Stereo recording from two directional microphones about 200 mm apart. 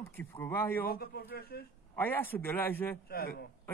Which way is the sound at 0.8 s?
50° left (ahead or behind).